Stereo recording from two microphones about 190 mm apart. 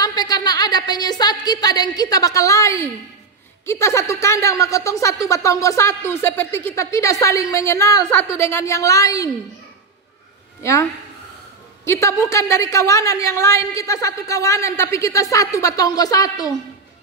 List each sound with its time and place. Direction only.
0.0 s a woman's voice: 20° left (ahead or behind)
10.6 s a woman's voice: 15° left (ahead or behind)